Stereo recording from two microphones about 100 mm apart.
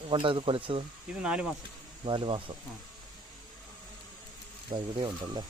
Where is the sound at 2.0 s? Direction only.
55° right (ahead or behind).